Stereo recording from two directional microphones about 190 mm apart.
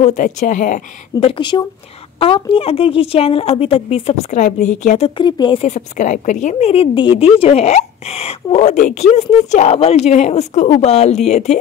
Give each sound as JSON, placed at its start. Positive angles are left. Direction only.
{"t": 0.0, "sound": "speech", "side_deg": 40}
{"t": 1.3, "sound": "speech", "side_deg": 25}